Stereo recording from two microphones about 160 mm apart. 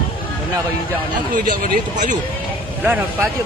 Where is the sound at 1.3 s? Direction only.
60° right (ahead or behind).